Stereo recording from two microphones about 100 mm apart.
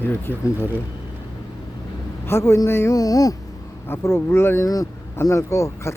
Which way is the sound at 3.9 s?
25° left (ahead or behind).